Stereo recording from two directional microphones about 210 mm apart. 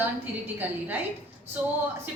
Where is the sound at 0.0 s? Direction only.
10° right (ahead or behind).